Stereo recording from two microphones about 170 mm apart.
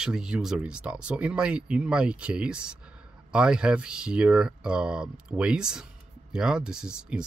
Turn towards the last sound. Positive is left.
turn(degrees=-5)  # may be behind; listen again after turning